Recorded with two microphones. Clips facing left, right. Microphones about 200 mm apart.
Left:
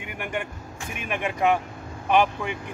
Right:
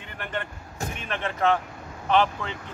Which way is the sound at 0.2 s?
10° left (ahead or behind).